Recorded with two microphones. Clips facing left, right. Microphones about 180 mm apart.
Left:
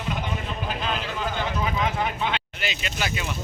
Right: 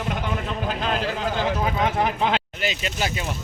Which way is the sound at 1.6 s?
55° right (ahead or behind).